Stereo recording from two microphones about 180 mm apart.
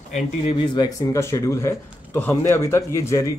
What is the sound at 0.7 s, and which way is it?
Speech, 20° left (ahead or behind).